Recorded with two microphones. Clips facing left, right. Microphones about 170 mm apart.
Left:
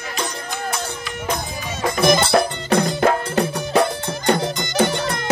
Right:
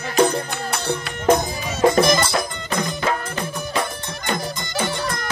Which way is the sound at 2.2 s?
60° left (ahead or behind).